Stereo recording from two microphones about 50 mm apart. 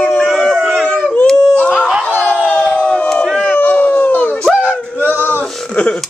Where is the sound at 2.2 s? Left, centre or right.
Left.